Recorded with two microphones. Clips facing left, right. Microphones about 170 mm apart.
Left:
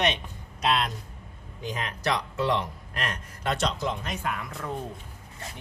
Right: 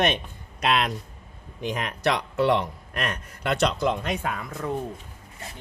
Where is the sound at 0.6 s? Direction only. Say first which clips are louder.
Right 2 dB; 70° right (ahead or behind).